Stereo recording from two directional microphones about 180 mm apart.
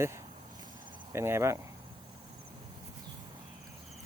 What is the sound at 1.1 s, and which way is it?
Speech, 15° right (ahead or behind).